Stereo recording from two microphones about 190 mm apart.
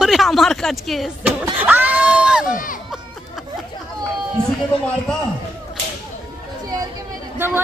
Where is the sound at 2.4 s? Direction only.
45° left (ahead or behind).